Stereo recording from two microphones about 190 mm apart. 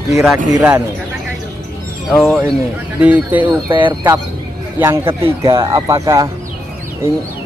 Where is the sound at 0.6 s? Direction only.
10° right (ahead or behind).